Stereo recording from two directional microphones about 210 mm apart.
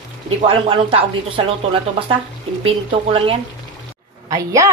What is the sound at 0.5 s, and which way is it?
Speech, 25° right (ahead or behind).